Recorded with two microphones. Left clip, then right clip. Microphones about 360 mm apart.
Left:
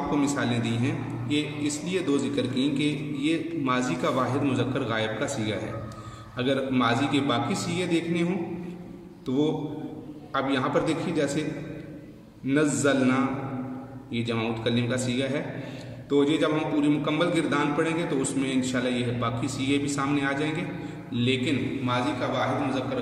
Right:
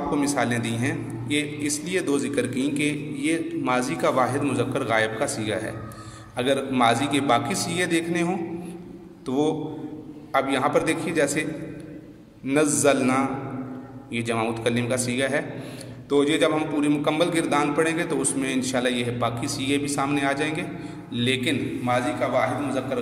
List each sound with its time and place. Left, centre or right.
0.1 s a man's voice: centre
12.4 s a man's voice: centre